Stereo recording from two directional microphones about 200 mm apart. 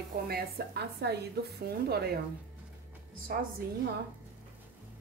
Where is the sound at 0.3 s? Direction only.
55° right (ahead or behind).